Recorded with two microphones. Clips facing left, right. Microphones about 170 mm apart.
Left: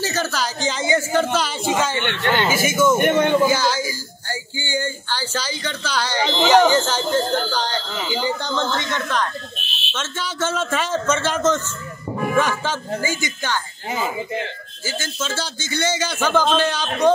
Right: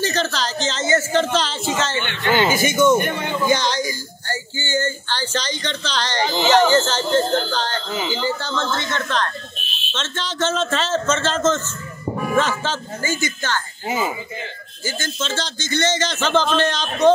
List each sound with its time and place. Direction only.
0.0 s a man's voice: 10° left (ahead or behind)
3.0 s speech: 75° left (ahead or behind)
3.4 s a man's voice: 5° left (ahead or behind)
14.9 s a man's voice: 10° left (ahead or behind)